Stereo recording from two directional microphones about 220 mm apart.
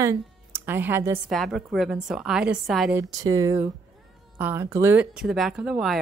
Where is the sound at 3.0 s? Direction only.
15° right (ahead or behind).